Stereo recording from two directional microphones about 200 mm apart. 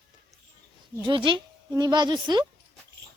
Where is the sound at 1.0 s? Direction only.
25° right (ahead or behind).